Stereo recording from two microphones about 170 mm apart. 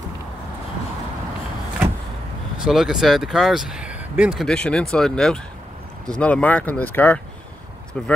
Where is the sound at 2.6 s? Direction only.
Centre (ahead or behind).